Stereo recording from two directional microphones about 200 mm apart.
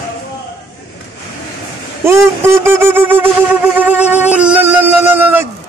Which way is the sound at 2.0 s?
15° right (ahead or behind).